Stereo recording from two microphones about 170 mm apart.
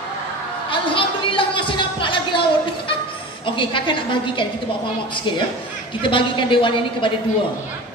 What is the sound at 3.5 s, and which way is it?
Speech, 30° left (ahead or behind).